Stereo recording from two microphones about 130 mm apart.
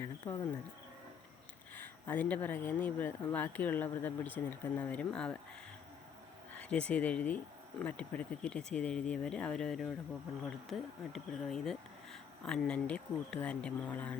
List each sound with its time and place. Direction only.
0.0 s speech: 25° left (ahead or behind)
1.7 s speech: 15° left (ahead or behind)
6.5 s speech: 10° left (ahead or behind)